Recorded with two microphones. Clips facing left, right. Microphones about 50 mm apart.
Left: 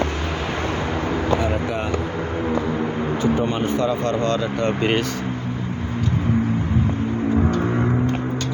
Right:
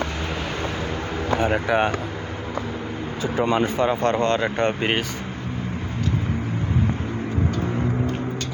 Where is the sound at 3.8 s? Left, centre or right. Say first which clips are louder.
Even; right.